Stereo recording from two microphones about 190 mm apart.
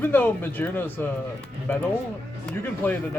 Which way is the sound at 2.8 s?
10° left (ahead or behind).